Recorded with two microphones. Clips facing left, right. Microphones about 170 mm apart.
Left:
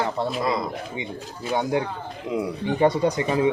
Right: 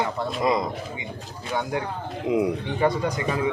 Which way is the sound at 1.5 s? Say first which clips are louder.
Left 3 dB; 20° left (ahead or behind).